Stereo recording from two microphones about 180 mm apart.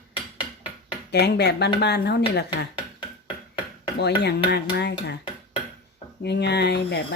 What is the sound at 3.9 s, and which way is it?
Speech, 70° left (ahead or behind).